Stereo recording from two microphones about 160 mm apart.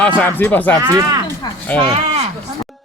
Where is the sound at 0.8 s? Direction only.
20° right (ahead or behind).